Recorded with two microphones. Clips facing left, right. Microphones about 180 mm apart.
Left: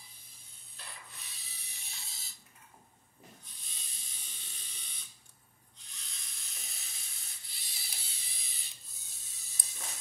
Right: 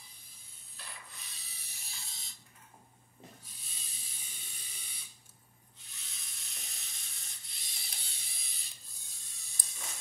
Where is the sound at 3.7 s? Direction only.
5° right (ahead or behind).